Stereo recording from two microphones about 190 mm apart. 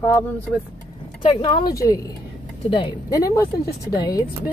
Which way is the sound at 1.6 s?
20° left (ahead or behind).